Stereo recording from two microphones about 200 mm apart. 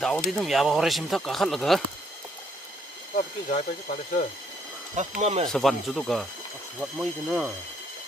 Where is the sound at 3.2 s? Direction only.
35° left (ahead or behind).